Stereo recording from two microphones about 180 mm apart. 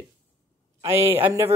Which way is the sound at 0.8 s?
15° right (ahead or behind).